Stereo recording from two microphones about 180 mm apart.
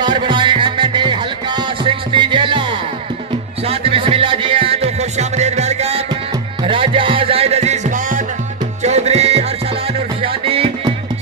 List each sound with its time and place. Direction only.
0.0 s music: 25° right (ahead or behind)
3.6 s music: 30° right (ahead or behind)